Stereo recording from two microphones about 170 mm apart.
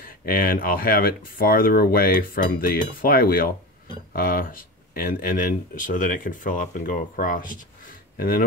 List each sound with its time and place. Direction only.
0.0 s speech: 55° left (ahead or behind)